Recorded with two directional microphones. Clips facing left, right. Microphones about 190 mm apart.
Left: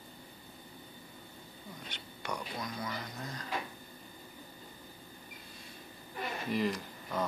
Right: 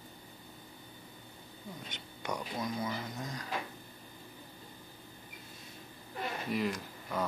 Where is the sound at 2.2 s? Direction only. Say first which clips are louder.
Right 3 dB; 20° right (ahead or behind).